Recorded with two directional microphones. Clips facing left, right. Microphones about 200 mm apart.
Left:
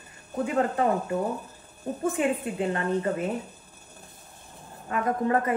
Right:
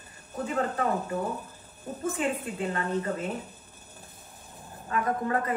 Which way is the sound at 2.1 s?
20° left (ahead or behind).